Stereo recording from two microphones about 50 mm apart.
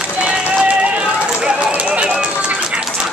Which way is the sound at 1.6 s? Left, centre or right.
Right.